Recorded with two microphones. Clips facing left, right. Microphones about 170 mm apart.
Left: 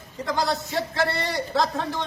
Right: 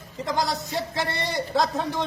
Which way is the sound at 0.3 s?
15° right (ahead or behind).